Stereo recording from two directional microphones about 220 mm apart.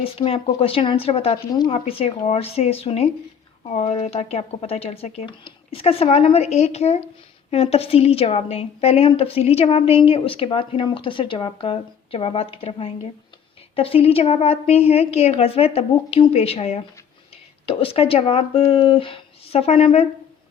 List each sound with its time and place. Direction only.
0.0 s a woman's voice: 25° left (ahead or behind)